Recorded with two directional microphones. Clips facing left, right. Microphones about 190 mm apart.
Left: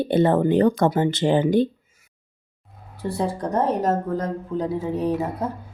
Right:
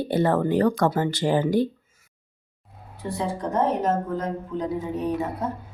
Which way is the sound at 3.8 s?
40° left (ahead or behind).